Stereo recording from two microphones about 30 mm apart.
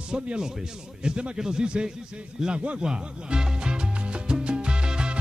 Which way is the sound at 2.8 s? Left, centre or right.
Right.